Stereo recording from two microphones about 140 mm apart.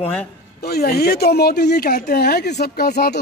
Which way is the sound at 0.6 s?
90° left.